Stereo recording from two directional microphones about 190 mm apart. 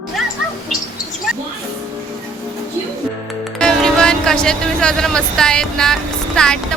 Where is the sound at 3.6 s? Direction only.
5° left (ahead or behind).